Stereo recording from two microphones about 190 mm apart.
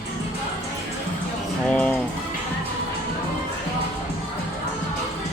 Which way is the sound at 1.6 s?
5° left (ahead or behind).